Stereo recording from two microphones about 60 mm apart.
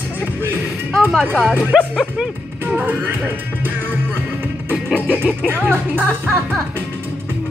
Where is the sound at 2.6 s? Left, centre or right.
Right.